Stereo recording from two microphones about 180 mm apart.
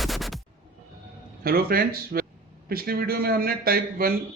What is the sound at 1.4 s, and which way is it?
A man's voice, 55° right (ahead or behind).